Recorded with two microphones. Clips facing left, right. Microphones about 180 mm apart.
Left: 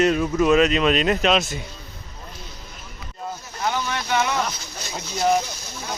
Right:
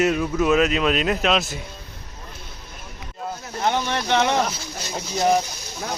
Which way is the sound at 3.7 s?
30° right (ahead or behind).